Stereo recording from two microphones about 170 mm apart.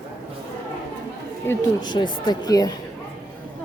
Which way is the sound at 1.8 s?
25° left (ahead or behind).